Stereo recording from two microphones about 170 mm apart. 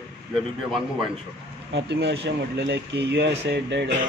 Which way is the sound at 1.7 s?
90° right.